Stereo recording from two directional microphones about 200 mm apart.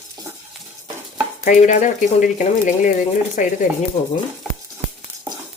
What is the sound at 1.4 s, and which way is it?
Speech, 40° left (ahead or behind).